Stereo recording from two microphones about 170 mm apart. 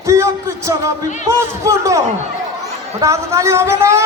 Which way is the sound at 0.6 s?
15° right (ahead or behind).